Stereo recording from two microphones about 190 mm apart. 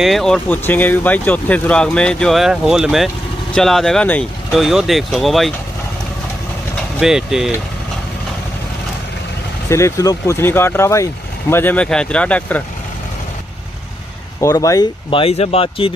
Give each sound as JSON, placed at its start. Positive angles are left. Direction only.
{"t": 0.0, "sound": "speech", "side_deg": 0}
{"t": 7.0, "sound": "speech", "side_deg": 0}
{"t": 9.7, "sound": "speech", "side_deg": 15}
{"t": 14.4, "sound": "speech", "side_deg": 15}